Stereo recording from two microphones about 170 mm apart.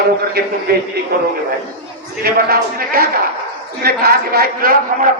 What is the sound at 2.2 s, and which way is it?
A man's voice, 60° right (ahead or behind).